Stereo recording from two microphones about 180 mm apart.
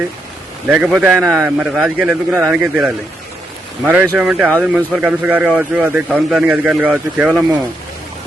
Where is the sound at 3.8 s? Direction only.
10° right (ahead or behind).